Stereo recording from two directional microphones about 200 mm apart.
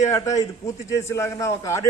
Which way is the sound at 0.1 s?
15° left (ahead or behind).